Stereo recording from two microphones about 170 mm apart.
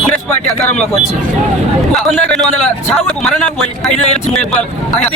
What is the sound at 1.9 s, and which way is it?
A man's voice, 5° left (ahead or behind).